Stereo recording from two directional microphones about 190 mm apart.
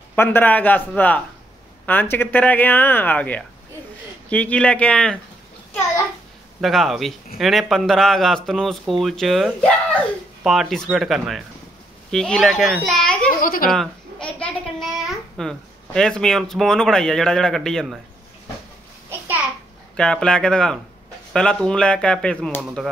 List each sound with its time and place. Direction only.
0.1 s speech: 10° left (ahead or behind)
6.6 s a child's voice: centre (ahead or behind)
13.3 s speech: 45° left (ahead or behind)
13.7 s a child's voice: 5° left (ahead or behind)
19.0 s a sound: 10° right (ahead or behind)
20.0 s speech: 5° left (ahead or behind)